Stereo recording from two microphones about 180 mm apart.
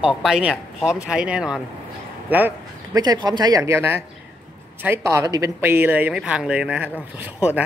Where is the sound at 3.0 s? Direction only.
20° right (ahead or behind).